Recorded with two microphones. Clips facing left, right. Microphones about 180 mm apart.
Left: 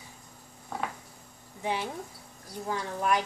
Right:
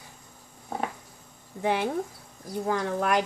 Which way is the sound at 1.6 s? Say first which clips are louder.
Right 6 dB; 60° right (ahead or behind).